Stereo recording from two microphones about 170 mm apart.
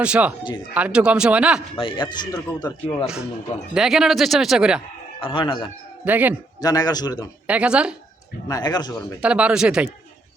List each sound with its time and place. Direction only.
0.0 s a man's voice: 5° right (ahead or behind)
1.7 s speech: 30° left (ahead or behind)
3.8 s a man's voice: centre (ahead or behind)
5.2 s speech: 30° left (ahead or behind)
6.1 s speech: 10° right (ahead or behind)
6.6 s speech: 20° left (ahead or behind)
7.4 s speech: 5° right (ahead or behind)
8.4 s speech: 20° left (ahead or behind)
9.2 s speech: 5° right (ahead or behind)